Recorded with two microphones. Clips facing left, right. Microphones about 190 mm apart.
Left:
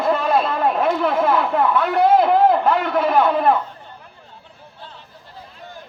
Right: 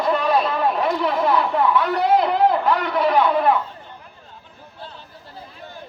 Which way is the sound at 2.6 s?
50° left (ahead or behind).